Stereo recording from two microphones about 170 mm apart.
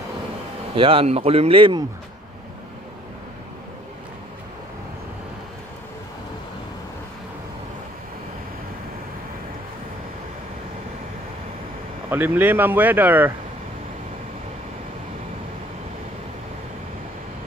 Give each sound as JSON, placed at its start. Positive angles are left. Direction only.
{"t": 0.7, "sound": "speech", "side_deg": -35}
{"t": 12.1, "sound": "speech", "side_deg": -10}